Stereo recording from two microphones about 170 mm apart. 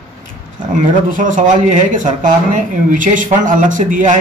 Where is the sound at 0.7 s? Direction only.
50° right (ahead or behind).